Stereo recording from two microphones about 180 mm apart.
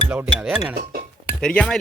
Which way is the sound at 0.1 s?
5° right (ahead or behind).